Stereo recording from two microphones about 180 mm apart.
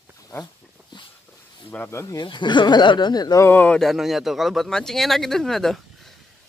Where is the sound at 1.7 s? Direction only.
10° left (ahead or behind).